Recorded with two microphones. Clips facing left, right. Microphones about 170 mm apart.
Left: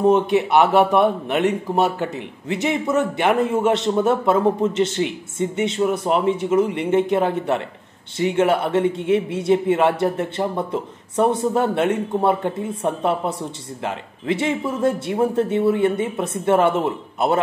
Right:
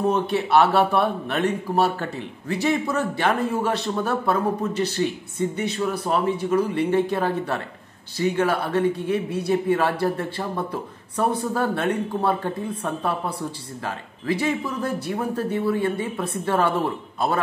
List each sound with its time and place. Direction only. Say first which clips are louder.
0.0 s a man's voice: left 6 dB; 20° left (ahead or behind)